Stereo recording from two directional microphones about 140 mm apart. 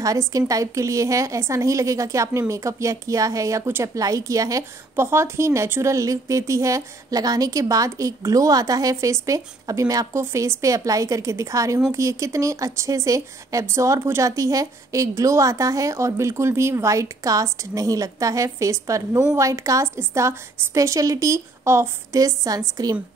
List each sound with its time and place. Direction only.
0.3 s a woman's voice: 25° right (ahead or behind)